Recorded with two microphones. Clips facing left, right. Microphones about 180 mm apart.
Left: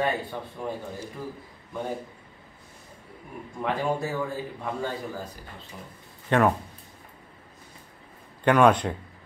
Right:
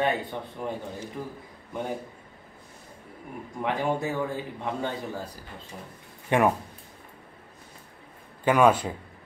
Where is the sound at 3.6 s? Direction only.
20° right (ahead or behind).